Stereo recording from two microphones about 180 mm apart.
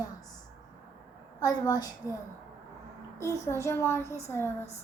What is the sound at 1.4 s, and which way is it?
Speech, 20° left (ahead or behind).